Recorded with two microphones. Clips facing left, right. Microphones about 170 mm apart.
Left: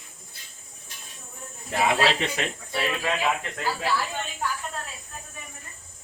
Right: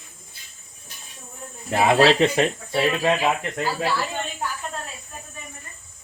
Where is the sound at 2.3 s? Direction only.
35° right (ahead or behind).